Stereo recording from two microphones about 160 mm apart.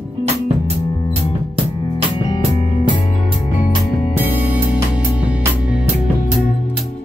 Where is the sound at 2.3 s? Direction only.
30° left (ahead or behind).